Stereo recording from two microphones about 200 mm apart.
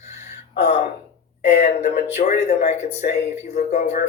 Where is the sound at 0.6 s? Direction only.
55° left (ahead or behind).